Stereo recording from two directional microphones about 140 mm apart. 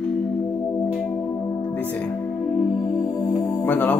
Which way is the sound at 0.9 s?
5° left (ahead or behind).